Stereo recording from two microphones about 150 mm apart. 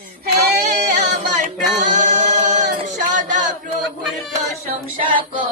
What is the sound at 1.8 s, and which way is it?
Singing, 50° right (ahead or behind).